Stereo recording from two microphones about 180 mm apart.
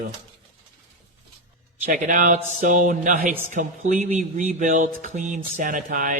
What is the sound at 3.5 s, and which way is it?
Speech, 45° right (ahead or behind).